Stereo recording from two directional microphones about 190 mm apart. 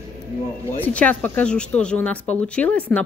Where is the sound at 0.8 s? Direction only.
5° left (ahead or behind).